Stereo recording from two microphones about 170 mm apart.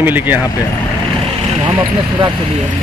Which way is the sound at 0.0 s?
10° right (ahead or behind).